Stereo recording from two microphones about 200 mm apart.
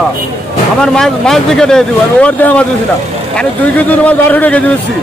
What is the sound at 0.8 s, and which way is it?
Speech, 5° left (ahead or behind).